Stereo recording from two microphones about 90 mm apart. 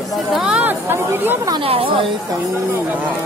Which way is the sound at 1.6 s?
90° right.